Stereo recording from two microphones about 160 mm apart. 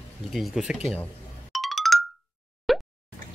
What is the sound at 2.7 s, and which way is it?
Plop, centre (ahead or behind).